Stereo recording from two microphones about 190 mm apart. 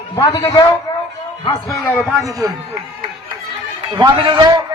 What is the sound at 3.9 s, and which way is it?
Speech, 25° right (ahead or behind).